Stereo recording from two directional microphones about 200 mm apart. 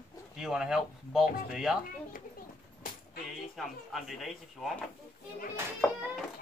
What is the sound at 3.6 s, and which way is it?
Speech, centre (ahead or behind).